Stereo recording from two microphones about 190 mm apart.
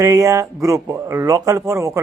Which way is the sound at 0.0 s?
15° right (ahead or behind).